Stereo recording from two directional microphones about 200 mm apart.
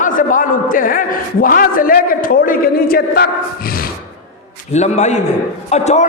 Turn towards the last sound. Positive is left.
turn(degrees=35)  # may be behind; listen again after turning